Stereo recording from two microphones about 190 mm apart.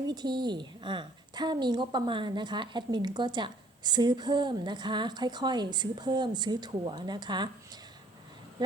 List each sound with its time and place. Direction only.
0.1 s a woman's voice: 20° right (ahead or behind)